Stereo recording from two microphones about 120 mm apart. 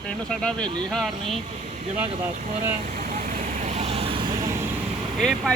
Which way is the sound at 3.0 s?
90° right.